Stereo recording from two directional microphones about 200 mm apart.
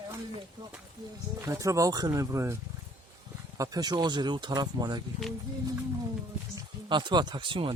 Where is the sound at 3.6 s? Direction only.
20° right (ahead or behind).